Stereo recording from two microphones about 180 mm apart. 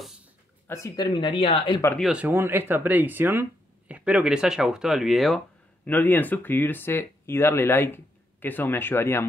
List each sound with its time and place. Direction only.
0.7 s speech: 15° left (ahead or behind)
2.0 s speech: 5° right (ahead or behind)
5.9 s speech: 10° left (ahead or behind)